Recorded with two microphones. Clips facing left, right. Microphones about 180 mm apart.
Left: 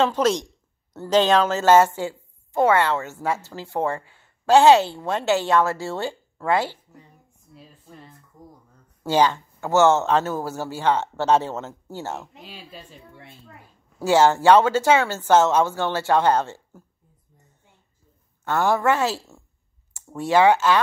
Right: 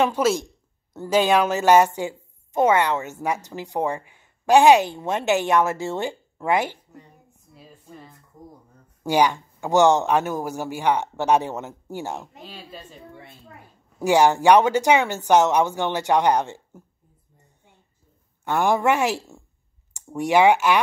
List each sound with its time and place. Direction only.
0.0 s a woman's voice: 10° right (ahead or behind)
9.0 s a woman's voice: 15° right (ahead or behind)
12.4 s speech: 10° left (ahead or behind)
13.9 s a woman's voice: 15° right (ahead or behind)
18.4 s a woman's voice: 15° right (ahead or behind)